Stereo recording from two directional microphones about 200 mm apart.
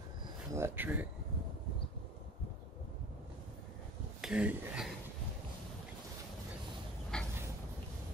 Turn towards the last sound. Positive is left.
turn(degrees=5)  # may be behind; listen again after turning